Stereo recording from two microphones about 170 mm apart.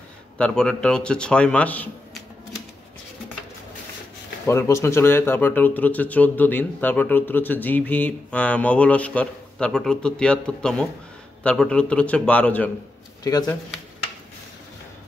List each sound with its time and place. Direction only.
0.4 s speech: 5° left (ahead or behind)
4.5 s speech: 15° left (ahead or behind)
13.2 s speech: 20° left (ahead or behind)